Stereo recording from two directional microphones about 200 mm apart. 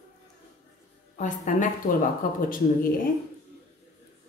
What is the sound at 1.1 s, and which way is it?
Speech, 40° left (ahead or behind).